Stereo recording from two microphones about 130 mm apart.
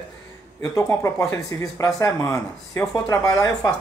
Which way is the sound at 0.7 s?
25° left (ahead or behind).